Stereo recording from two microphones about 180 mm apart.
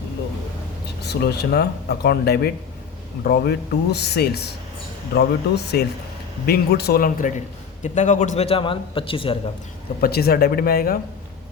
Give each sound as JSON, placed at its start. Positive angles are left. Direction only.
{"t": 1.0, "sound": "a man's voice", "side_deg": 65}
{"t": 10.0, "sound": "speech", "side_deg": 60}